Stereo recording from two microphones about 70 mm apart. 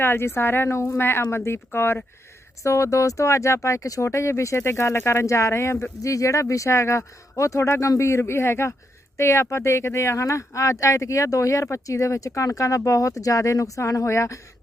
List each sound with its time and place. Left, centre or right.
0.0 s a woman's voice: left
0.8 s speech: left
1.0 s a woman's voice: left
2.6 s speech: left
6.0 s speech: left